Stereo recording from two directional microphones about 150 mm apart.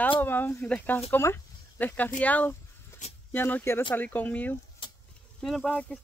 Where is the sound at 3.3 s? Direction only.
15° left (ahead or behind).